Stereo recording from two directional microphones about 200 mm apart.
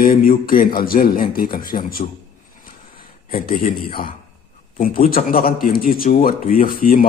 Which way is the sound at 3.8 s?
45° left (ahead or behind).